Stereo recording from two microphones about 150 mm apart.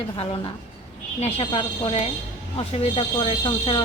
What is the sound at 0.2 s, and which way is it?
A woman's voice, 40° left (ahead or behind).